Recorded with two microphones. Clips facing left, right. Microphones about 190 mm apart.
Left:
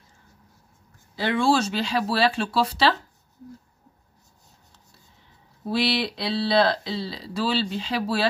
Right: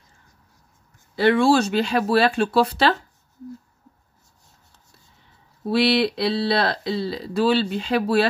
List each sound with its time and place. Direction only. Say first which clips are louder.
1.1 s speech: right 5 dB; 60° right (ahead or behind)
5.7 s speech: right 5 dB; 60° right (ahead or behind)